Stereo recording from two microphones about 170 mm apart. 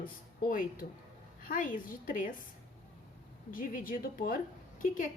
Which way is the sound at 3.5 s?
55° left (ahead or behind).